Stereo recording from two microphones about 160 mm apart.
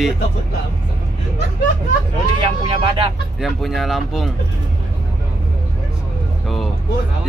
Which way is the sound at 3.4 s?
Centre (ahead or behind).